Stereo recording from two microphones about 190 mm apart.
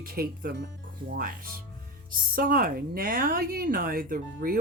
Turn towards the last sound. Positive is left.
turn(degrees=-50)  # may be behind; listen again after turning